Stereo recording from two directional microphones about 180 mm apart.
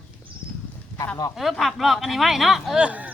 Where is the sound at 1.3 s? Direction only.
Centre (ahead or behind).